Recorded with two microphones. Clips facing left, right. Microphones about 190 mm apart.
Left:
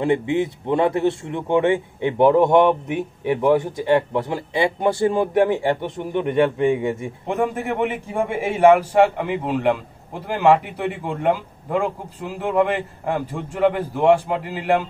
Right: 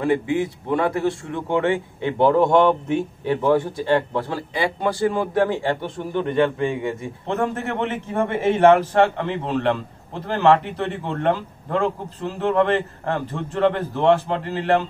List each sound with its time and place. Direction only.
0.0 s speech: 25° left (ahead or behind)